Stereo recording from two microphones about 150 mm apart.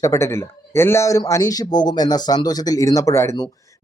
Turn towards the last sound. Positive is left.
turn(degrees=20)  # may be behind; listen again after turning